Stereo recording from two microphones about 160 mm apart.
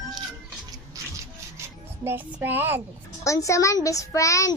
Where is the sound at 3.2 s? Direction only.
20° left (ahead or behind).